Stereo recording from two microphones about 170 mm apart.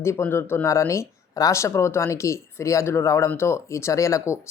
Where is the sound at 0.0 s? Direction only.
15° left (ahead or behind).